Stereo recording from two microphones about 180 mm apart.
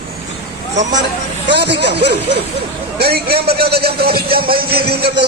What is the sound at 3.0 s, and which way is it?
A man's voice, 60° right (ahead or behind).